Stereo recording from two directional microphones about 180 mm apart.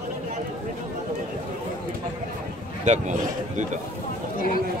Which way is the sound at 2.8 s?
40° right (ahead or behind).